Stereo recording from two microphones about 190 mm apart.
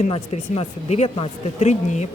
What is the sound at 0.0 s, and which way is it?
Speech, 35° left (ahead or behind).